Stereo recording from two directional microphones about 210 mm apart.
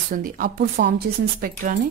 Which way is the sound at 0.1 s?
40° right (ahead or behind).